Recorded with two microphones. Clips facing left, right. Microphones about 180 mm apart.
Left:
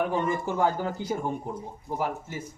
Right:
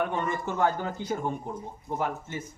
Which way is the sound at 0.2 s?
10° left (ahead or behind).